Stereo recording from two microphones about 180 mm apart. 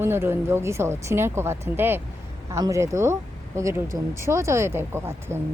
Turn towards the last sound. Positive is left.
turn(degrees=-15)  # may be behind; listen again after turning